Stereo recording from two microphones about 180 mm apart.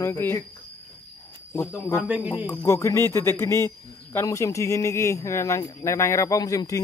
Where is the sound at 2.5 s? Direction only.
15° left (ahead or behind).